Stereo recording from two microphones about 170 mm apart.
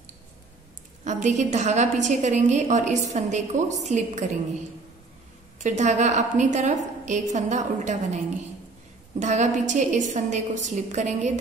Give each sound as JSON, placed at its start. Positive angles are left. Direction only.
{"t": 1.0, "sound": "a woman's voice", "side_deg": -45}
{"t": 5.6, "sound": "a woman's voice", "side_deg": -45}
{"t": 9.2, "sound": "a woman's voice", "side_deg": -45}